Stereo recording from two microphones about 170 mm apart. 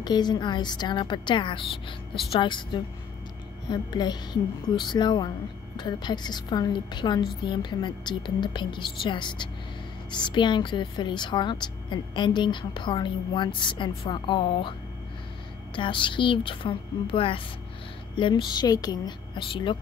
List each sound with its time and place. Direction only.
0.0 s a woman's voice: 25° left (ahead or behind)